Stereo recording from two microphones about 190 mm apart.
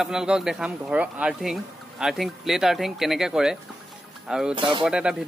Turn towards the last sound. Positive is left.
turn(degrees=-5)  # may be behind; listen again after turning